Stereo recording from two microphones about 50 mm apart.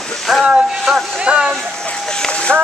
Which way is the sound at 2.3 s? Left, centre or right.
Left.